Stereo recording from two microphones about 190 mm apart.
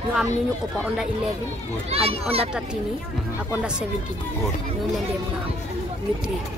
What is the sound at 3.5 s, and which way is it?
Speech, 5° right (ahead or behind).